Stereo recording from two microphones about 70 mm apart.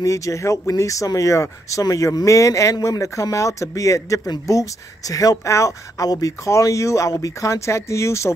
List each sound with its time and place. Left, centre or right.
0.0 s speech: left